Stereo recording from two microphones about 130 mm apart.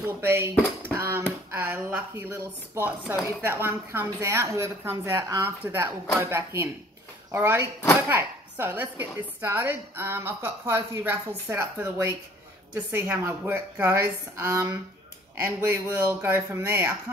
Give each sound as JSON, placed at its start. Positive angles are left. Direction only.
{"t": 0.2, "sound": "a woman's voice", "side_deg": -15}